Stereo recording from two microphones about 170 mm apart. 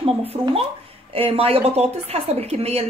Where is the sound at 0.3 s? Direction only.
35° right (ahead or behind).